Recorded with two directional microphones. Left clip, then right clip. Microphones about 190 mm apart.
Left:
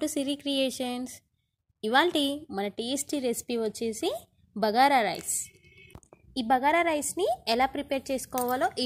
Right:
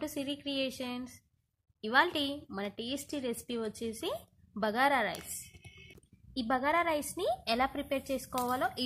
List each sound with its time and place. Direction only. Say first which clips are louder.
0.0 s speech: left 7 dB; 40° left (ahead or behind)
6.3 s a woman's voice: left 6 dB; 25° left (ahead or behind)